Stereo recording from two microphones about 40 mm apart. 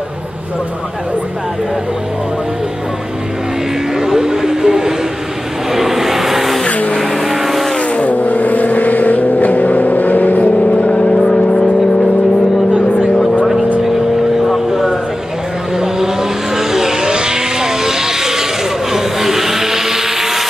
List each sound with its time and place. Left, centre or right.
4.0 s a sound: centre
5.7 s vehicle: centre
7.9 s vehicle: left
10.8 s vehicle: left
14.5 s vehicle: centre